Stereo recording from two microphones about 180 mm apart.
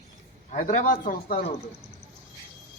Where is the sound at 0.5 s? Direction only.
45° left (ahead or behind).